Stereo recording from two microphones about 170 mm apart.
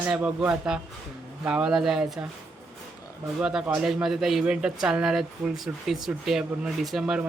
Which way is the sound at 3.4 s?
5° right (ahead or behind).